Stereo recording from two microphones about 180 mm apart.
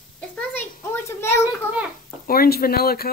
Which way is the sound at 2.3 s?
55° left (ahead or behind).